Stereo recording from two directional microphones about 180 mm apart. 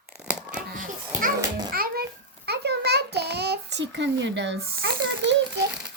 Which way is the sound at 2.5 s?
65° right (ahead or behind).